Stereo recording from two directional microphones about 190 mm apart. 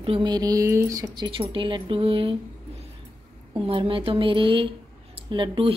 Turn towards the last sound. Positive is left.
turn(degrees=-25)  # may be behind; listen again after turning